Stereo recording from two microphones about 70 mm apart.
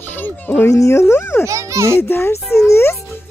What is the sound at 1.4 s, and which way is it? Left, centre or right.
Speech, right.